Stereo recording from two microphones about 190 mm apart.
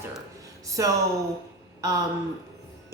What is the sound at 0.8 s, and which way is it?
Speech, 15° right (ahead or behind).